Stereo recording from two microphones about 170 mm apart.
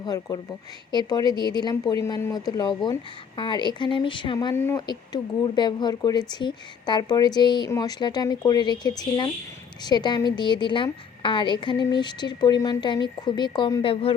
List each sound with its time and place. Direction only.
0.0 s a woman's voice: 25° left (ahead or behind)
4.5 s speech: 15° left (ahead or behind)
4.9 s a woman's voice: 25° left (ahead or behind)